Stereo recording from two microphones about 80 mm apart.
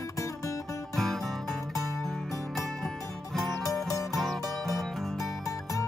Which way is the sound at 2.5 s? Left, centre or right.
Centre.